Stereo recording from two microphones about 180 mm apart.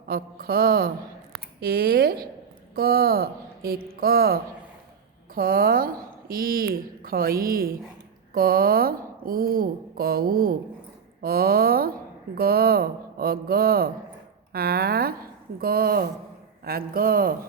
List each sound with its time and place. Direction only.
0.1 s speech: 55° right (ahead or behind)